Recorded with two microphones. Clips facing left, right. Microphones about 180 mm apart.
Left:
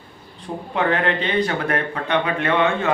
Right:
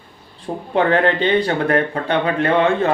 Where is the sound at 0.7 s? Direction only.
30° right (ahead or behind).